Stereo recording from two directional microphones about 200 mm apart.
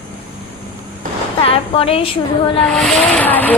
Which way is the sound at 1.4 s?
30° left (ahead or behind).